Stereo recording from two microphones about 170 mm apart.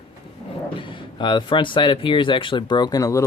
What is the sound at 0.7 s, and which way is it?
Speech, 30° left (ahead or behind).